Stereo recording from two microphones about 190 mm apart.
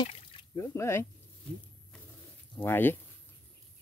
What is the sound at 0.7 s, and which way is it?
Speech, 15° left (ahead or behind).